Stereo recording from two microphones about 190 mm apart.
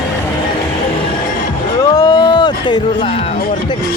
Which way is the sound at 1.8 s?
20° left (ahead or behind).